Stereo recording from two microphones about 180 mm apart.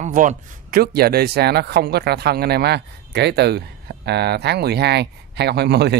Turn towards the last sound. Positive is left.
turn(degrees=-65)  # may be behind; listen again after turning